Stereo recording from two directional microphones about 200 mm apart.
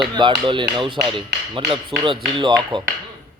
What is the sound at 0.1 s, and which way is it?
Speech, 25° right (ahead or behind).